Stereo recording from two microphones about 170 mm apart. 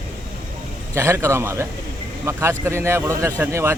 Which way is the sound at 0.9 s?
15° right (ahead or behind).